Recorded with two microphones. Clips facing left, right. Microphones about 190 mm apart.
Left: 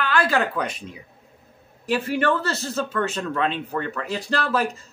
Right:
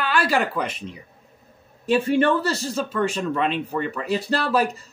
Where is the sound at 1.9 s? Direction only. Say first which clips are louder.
Right 3 dB; 20° right (ahead or behind).